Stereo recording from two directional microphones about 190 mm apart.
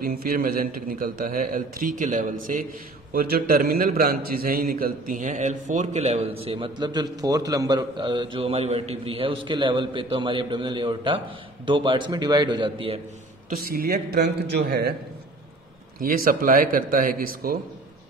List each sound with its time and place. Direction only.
0.0 s a man's voice: 50° right (ahead or behind)
3.1 s a man's voice: 55° right (ahead or behind); by 13.0 s 25° right (ahead or behind)
13.5 s a man's voice: 55° right (ahead or behind)
16.0 s a man's voice: 45° right (ahead or behind)